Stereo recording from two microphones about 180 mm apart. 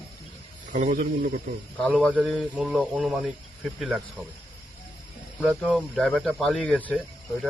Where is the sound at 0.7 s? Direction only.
40° right (ahead or behind).